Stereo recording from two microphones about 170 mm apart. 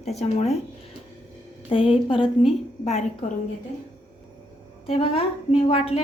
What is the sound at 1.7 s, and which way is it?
Speech, 30° left (ahead or behind).